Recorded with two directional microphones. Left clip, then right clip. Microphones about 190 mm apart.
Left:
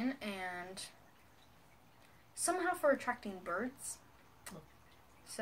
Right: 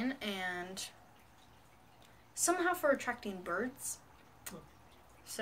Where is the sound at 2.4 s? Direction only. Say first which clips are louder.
Right 2 dB; centre (ahead or behind).